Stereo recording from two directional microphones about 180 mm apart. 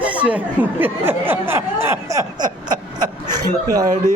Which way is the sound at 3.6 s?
20° right (ahead or behind).